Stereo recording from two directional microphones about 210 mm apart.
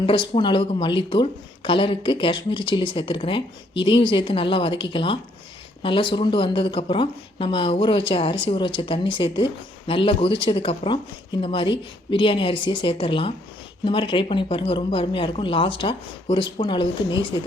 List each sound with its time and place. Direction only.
0.0 s speech: 25° left (ahead or behind)